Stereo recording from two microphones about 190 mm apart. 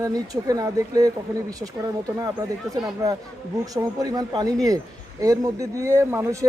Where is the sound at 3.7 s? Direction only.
20° right (ahead or behind).